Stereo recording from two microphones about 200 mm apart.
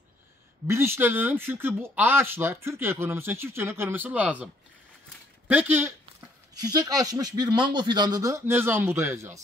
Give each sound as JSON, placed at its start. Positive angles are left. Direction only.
{"t": 0.7, "sound": "speech", "side_deg": -10}
{"t": 5.5, "sound": "speech", "side_deg": -10}